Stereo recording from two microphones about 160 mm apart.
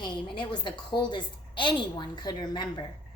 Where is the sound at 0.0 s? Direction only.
30° left (ahead or behind).